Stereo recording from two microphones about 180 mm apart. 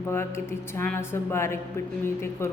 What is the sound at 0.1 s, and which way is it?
A woman's voice, 15° left (ahead or behind).